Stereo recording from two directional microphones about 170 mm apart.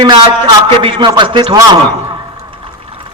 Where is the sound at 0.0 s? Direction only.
25° right (ahead or behind).